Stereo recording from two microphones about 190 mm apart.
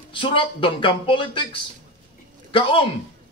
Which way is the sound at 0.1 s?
25° left (ahead or behind).